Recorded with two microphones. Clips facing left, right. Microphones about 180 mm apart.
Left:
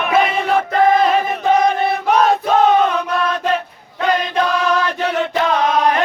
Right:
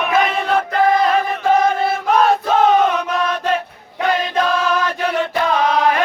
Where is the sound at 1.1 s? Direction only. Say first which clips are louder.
Left 1 dB; 20° left (ahead or behind).